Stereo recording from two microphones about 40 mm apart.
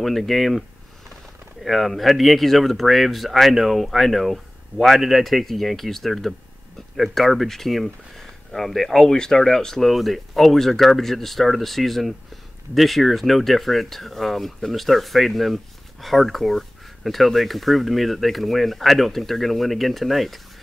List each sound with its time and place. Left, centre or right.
0.0 s speech: centre
9.0 s speech: centre